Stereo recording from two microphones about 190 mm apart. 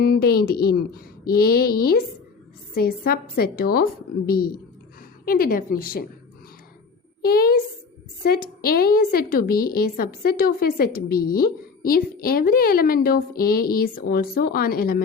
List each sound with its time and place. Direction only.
0.0 s a woman's voice: 55° left (ahead or behind)
7.2 s a woman's voice: 50° left (ahead or behind)